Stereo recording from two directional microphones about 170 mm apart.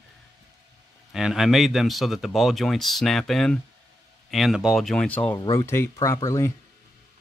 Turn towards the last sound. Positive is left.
turn(degrees=15)  # may be behind; listen again after turning